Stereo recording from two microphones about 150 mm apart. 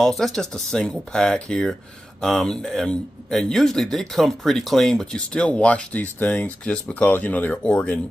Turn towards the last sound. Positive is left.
turn(degrees=5)  # may be behind; listen again after turning